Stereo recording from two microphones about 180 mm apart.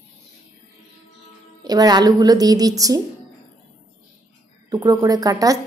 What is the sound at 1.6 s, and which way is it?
A woman's voice, 20° right (ahead or behind).